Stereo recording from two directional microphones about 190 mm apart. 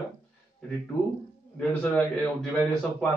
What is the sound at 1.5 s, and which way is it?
Speech, 10° left (ahead or behind).